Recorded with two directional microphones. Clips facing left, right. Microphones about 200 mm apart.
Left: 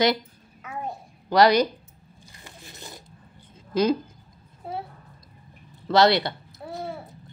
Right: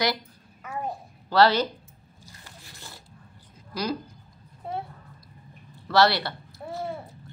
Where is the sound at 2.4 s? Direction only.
20° left (ahead or behind).